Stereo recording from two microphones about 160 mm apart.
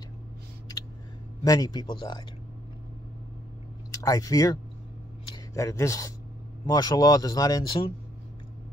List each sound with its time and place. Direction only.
1.4 s speech: 25° left (ahead or behind)
3.9 s speech: 20° left (ahead or behind)